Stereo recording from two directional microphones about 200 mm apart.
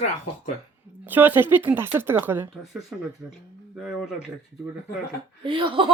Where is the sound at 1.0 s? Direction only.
10° right (ahead or behind).